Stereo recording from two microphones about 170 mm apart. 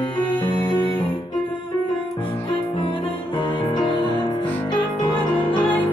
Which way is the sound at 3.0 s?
30° left (ahead or behind).